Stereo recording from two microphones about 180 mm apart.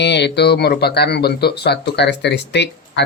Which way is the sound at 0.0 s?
70° left (ahead or behind).